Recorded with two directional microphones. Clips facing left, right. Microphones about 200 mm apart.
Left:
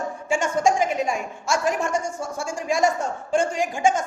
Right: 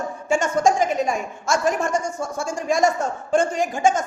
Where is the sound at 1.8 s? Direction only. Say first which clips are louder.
Right 2 dB; 10° left (ahead or behind).